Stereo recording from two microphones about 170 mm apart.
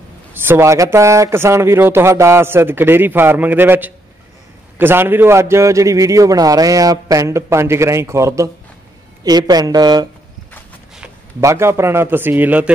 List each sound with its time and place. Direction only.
0.3 s a man's voice: 15° right (ahead or behind)
11.4 s a man's voice: 15° right (ahead or behind)